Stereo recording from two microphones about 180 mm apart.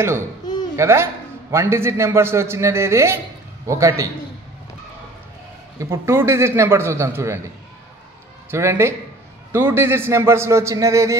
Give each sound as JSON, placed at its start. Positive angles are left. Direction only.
{"t": 0.7, "sound": "a man's voice", "side_deg": -15}
{"t": 5.8, "sound": "a man's voice", "side_deg": -15}